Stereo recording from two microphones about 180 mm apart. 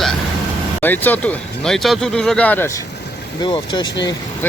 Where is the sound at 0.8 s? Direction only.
10° left (ahead or behind).